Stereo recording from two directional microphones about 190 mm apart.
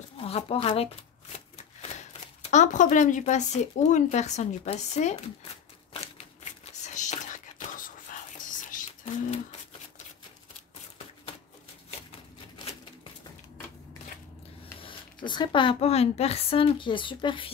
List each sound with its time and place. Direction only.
0.2 s speech: 30° left (ahead or behind)
2.5 s speech: 40° left (ahead or behind)
6.4 s whispering: 40° left (ahead or behind)
8.5 s a sound: 45° left (ahead or behind)
14.8 s speech: 25° left (ahead or behind)